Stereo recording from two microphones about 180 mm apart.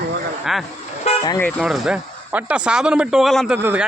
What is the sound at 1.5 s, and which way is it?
Speech, centre (ahead or behind).